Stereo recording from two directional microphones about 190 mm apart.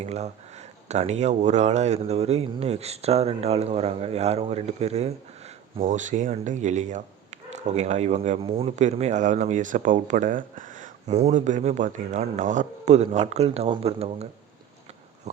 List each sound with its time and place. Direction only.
0.0 s speech: 35° right (ahead or behind)